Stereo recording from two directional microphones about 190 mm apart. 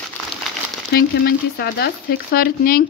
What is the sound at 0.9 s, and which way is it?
Speech, 60° left (ahead or behind).